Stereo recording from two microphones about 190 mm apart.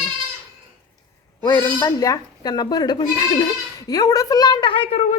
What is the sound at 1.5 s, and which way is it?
Speech, 20° left (ahead or behind).